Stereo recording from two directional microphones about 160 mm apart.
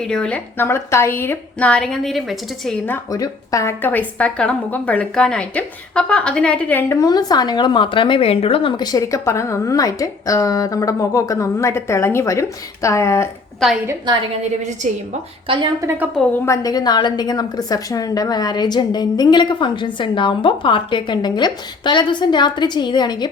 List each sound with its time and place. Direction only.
0.0 s a woman's voice: 5° left (ahead or behind)
2.8 s a woman's voice: 15° left (ahead or behind)
13.6 s a woman's voice: centre (ahead or behind)
15.8 s a woman's voice: 15° right (ahead or behind)
16.3 s a woman's voice: 20° left (ahead or behind)